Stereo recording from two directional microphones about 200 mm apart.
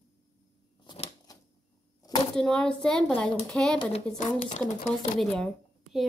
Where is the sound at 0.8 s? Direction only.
25° left (ahead or behind).